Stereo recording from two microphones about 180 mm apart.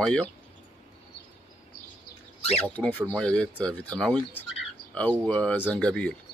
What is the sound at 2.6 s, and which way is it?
Speech, 10° left (ahead or behind).